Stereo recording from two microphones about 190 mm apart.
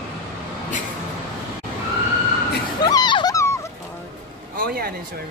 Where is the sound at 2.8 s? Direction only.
20° left (ahead or behind).